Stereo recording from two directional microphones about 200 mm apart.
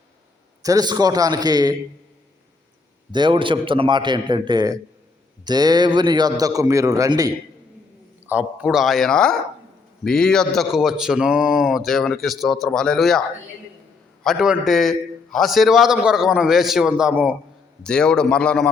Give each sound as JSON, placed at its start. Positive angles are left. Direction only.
{"t": 0.6, "sound": "a man's voice", "side_deg": -20}
{"t": 3.1, "sound": "a man's voice", "side_deg": -20}
{"t": 8.3, "sound": "a man's voice", "side_deg": -5}
{"t": 14.3, "sound": "a man's voice", "side_deg": -5}
{"t": 17.8, "sound": "a man's voice", "side_deg": 5}